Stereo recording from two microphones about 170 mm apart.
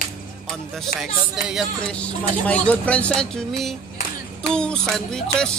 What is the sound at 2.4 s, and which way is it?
Speech, 10° left (ahead or behind).